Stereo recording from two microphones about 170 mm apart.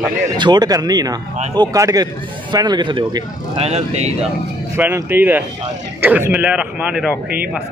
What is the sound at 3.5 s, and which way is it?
Speech, 40° right (ahead or behind).